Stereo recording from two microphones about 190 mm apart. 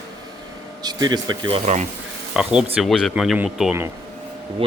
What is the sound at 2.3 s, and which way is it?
Speech, 5° right (ahead or behind).